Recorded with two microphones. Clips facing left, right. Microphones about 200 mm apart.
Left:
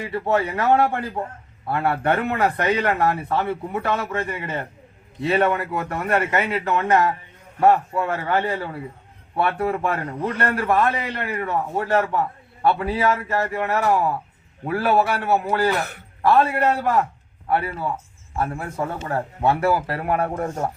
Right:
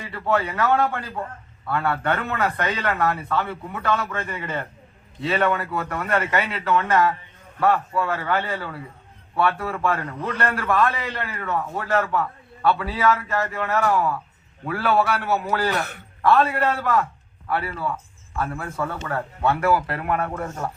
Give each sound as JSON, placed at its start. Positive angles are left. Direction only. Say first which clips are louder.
{"t": 0.0, "sound": "speech", "louder": "left 2 dB", "side_deg": 25}
{"t": 10.1, "sound": "a man's voice", "louder": "left 3 dB", "side_deg": 35}
{"t": 10.3, "sound": "speech", "louder": "left 1 dB", "side_deg": 25}